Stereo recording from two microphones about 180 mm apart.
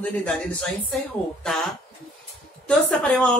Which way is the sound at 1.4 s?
Centre (ahead or behind).